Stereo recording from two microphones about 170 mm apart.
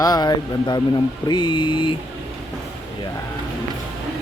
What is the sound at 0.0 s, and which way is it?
Speech, 25° left (ahead or behind).